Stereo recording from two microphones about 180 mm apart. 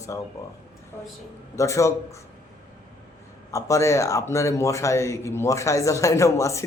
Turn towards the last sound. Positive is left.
turn(degrees=15)  # may be behind; listen again after turning